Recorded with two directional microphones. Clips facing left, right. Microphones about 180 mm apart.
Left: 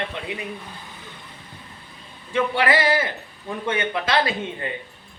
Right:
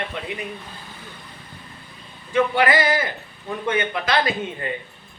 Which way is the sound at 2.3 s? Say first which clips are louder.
Right 2 dB; 30° left (ahead or behind).